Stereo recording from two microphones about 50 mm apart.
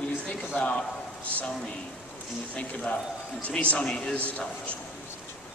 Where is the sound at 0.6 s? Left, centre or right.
Left.